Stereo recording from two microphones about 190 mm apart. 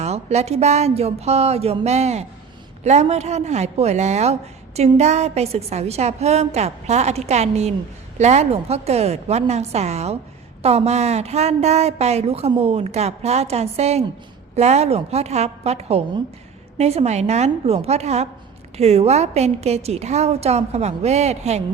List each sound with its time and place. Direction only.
0.0 s a woman's voice: 35° right (ahead or behind)